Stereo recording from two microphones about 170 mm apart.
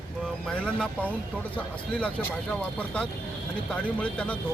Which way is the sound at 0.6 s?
5° left (ahead or behind).